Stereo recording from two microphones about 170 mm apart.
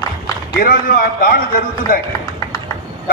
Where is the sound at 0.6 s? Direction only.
60° left (ahead or behind).